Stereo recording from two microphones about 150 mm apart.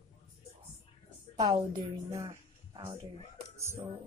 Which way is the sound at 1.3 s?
30° right (ahead or behind).